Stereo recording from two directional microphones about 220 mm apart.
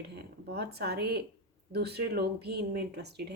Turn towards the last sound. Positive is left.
turn(degrees=-50)  # may be behind; listen again after turning